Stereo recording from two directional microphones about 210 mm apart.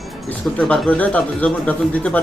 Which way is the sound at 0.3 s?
5° left (ahead or behind).